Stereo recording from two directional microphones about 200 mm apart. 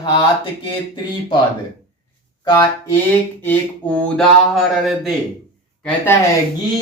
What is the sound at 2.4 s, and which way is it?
Speech, 25° left (ahead or behind).